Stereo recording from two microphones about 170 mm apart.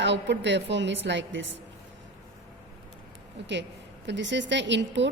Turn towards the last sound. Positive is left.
turn(degrees=-90)